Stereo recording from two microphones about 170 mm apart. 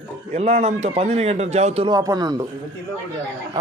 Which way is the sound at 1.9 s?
20° right (ahead or behind).